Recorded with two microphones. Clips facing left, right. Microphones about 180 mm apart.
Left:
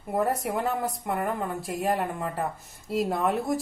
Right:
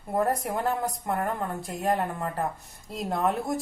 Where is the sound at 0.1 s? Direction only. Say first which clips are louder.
Even; centre (ahead or behind).